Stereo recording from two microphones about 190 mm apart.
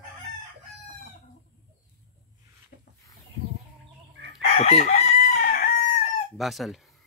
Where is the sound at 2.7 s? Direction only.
55° left (ahead or behind).